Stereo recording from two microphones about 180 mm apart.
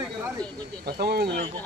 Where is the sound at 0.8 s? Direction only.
60° right (ahead or behind).